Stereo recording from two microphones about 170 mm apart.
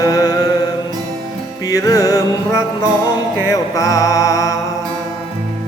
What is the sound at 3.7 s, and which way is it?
Music, 20° left (ahead or behind).